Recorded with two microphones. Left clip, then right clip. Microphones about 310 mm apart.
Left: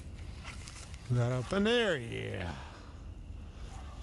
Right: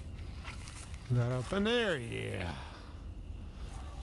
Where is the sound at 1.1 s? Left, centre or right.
Left.